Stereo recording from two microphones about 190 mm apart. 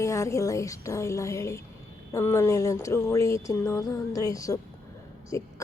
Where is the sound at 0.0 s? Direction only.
15° left (ahead or behind).